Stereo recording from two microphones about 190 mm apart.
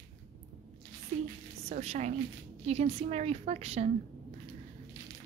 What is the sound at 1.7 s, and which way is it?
A woman's voice, 35° right (ahead or behind).